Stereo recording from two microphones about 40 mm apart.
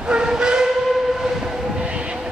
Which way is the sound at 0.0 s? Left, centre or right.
Centre.